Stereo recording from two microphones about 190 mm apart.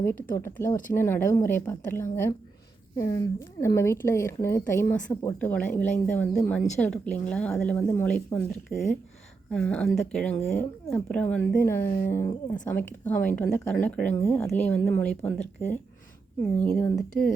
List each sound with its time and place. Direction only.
0.3 s a woman's voice: 15° left (ahead or behind)